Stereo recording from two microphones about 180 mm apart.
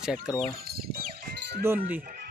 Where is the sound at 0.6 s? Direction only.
55° right (ahead or behind).